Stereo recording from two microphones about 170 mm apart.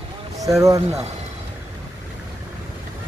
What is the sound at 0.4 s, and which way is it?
Speech, 20° right (ahead or behind).